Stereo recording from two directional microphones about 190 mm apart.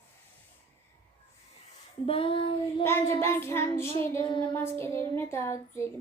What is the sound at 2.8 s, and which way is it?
Child singing, 10° left (ahead or behind).